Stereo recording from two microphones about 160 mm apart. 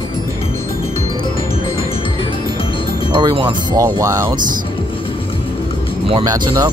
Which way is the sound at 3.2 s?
25° right (ahead or behind).